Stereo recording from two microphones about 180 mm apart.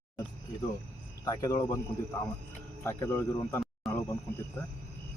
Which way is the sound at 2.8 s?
15° left (ahead or behind).